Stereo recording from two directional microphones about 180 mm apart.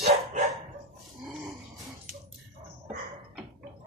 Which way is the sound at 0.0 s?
35° right (ahead or behind).